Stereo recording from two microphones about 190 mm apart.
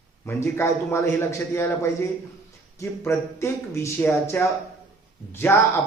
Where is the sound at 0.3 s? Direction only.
15° left (ahead or behind).